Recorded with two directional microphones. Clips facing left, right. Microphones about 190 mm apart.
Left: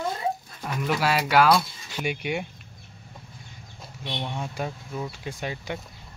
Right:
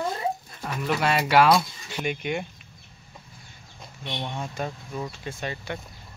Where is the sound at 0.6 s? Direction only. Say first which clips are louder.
Even; centre (ahead or behind).